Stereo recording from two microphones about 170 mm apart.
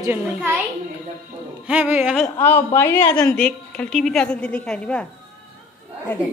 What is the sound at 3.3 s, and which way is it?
A woman's voice, 10° left (ahead or behind).